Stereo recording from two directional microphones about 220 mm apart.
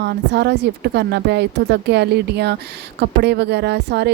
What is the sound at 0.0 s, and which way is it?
A woman's voice, 50° right (ahead or behind).